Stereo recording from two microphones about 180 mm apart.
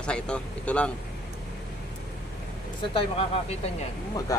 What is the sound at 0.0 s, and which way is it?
Speech, 5° left (ahead or behind).